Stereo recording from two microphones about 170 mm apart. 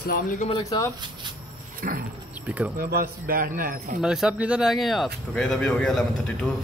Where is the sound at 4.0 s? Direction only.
5° right (ahead or behind).